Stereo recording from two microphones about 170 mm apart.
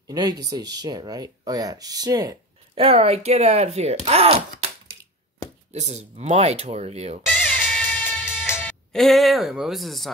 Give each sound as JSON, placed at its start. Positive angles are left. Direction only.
{"t": 0.0, "sound": "speech", "side_deg": -25}
{"t": 5.7, "sound": "speech", "side_deg": -40}
{"t": 7.3, "sound": "music", "side_deg": 5}